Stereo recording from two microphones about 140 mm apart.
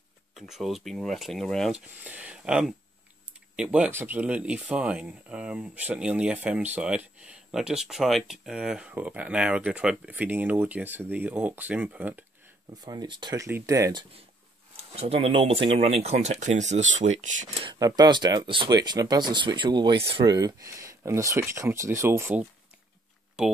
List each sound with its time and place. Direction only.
0.3 s speech: centre (ahead or behind)
2.0 s speech: 10° right (ahead or behind)
12.8 s speech: 30° right (ahead or behind)
13.5 s speech: 20° right (ahead or behind)
14.8 s speech: 45° right (ahead or behind); by 17.5 s 60° right (ahead or behind)
17.6 s speech: 25° right (ahead or behind)